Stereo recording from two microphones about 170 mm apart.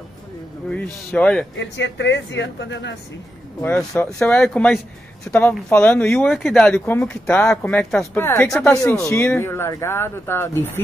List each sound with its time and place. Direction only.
0.7 s speech: 5° left (ahead or behind)
1.6 s speech: 90° left
3.6 s speech: 10° left (ahead or behind)